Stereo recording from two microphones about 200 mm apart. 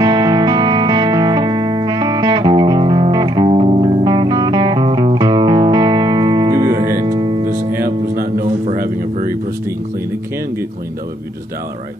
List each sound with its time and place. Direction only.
0.0 s music: 20° right (ahead or behind)
8.1 s music: 45° right (ahead or behind)
8.6 s a sound: 45° right (ahead or behind)